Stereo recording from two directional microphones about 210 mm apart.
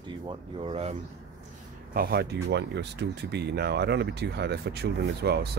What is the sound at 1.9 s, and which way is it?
Speech, 45° right (ahead or behind).